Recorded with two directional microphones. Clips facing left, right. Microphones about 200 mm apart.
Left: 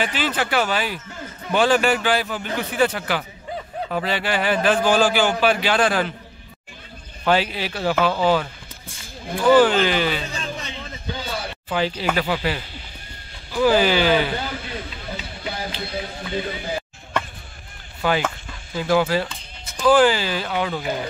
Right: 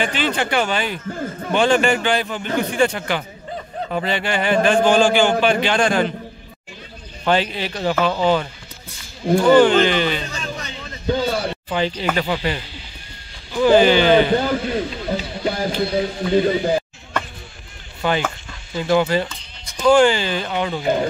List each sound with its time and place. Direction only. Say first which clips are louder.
0.0 s a man's voice: right 2 dB; 5° left (ahead or behind)
1.0 s speech: right 9 dB; 50° right (ahead or behind)
1.5 s a man's voice: right 1 dB; 5° left (ahead or behind)
7.2 s speech: right 1 dB; 5° left (ahead or behind)
9.5 s a man's voice: right 2 dB; 5° left (ahead or behind)
11.1 s a sound: right 10 dB; 55° right (ahead or behind)
11.7 s a man's voice: even; 5° left (ahead or behind)
14.3 s speech: right 10 dB; 50° right (ahead or behind)
18.0 s a man's voice: right 1 dB; 5° left (ahead or behind)